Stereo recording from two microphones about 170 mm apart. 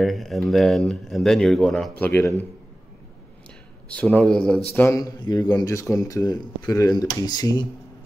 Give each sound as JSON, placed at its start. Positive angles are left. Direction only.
{"t": 0.0, "sound": "speech", "side_deg": 0}
{"t": 3.9, "sound": "speech", "side_deg": 5}
{"t": 4.7, "sound": "speech", "side_deg": 15}